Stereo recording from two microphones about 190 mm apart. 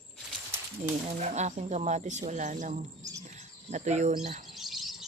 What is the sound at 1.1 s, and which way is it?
Speech, 35° right (ahead or behind).